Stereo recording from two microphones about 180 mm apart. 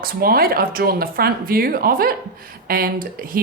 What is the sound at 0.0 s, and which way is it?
Speech, 55° right (ahead or behind).